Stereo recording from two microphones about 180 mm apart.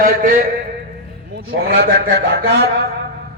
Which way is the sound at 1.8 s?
65° right (ahead or behind).